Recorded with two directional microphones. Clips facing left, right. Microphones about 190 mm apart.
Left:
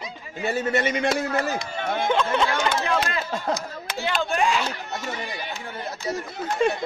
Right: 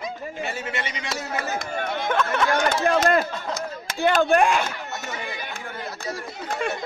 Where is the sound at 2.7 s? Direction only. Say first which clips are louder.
Right 5 dB; 50° right (ahead or behind).